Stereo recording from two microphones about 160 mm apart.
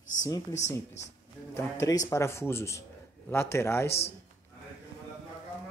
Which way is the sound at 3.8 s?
90° left.